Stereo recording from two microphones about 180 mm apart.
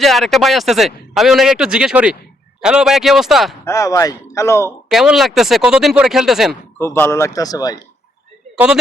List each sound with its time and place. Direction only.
0.0 s a man's voice: centre (ahead or behind)
3.6 s speech: 15° left (ahead or behind)
4.9 s a man's voice: centre (ahead or behind)
6.9 s speech: 15° left (ahead or behind)
8.5 s speech: 5° right (ahead or behind)